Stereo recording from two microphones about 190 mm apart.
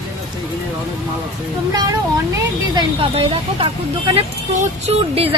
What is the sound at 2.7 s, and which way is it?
Speech, 30° right (ahead or behind).